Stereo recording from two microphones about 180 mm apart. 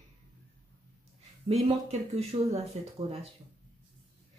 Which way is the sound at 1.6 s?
35° right (ahead or behind).